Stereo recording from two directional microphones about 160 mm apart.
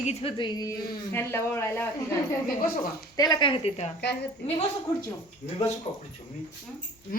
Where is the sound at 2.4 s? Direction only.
60° left (ahead or behind).